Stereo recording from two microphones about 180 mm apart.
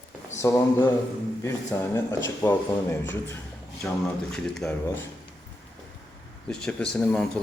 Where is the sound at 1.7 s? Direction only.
15° left (ahead or behind).